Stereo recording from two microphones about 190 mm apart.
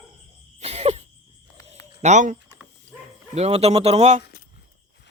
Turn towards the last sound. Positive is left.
turn(degrees=55)  # may be behind; listen again after turning